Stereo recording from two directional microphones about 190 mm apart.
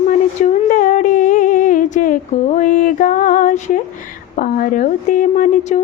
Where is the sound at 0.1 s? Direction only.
45° left (ahead or behind).